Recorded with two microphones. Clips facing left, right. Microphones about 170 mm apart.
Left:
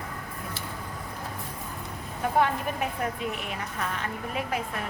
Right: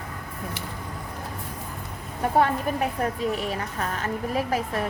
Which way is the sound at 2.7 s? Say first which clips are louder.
Right 4 dB; 35° right (ahead or behind).